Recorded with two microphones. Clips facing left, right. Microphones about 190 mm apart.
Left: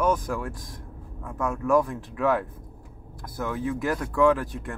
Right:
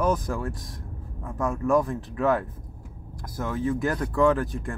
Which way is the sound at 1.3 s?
35° right (ahead or behind).